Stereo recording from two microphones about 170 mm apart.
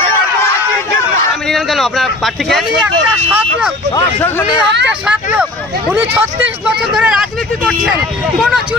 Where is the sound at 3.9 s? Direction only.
15° left (ahead or behind).